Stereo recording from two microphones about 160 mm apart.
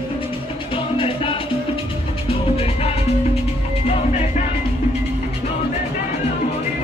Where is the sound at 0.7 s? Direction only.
35° left (ahead or behind).